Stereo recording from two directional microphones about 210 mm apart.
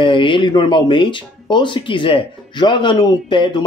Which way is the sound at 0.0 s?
25° left (ahead or behind).